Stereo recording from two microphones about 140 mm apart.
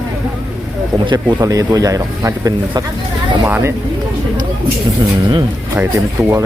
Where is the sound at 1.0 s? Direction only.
35° right (ahead or behind).